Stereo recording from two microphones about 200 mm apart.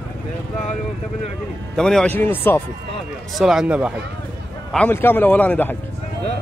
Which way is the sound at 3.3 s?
Centre (ahead or behind).